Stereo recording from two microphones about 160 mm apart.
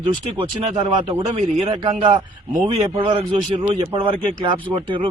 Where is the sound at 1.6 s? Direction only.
30° right (ahead or behind).